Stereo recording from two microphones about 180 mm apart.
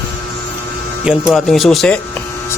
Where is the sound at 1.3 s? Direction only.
Centre (ahead or behind).